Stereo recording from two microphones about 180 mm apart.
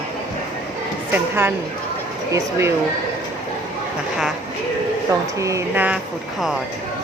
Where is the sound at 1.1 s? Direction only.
10° right (ahead or behind).